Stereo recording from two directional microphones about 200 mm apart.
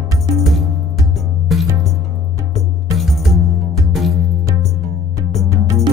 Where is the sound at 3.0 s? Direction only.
Centre (ahead or behind).